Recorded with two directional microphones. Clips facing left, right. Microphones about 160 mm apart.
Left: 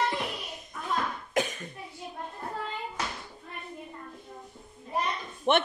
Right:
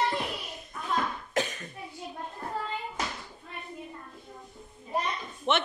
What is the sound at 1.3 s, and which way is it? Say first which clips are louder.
Cough: left 2 dB; 5° left (ahead or behind).